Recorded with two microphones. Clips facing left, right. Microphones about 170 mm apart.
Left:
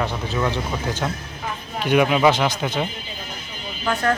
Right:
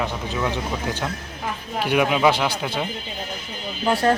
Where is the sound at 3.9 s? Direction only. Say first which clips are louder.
Right 3 dB; 30° right (ahead or behind).